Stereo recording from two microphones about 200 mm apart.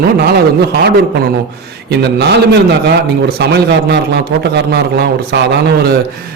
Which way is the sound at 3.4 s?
55° right (ahead or behind).